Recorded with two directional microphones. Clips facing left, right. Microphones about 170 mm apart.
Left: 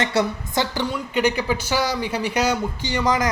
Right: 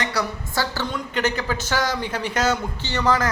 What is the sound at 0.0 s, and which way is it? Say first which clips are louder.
A man's voice: left 4 dB; 25° left (ahead or behind).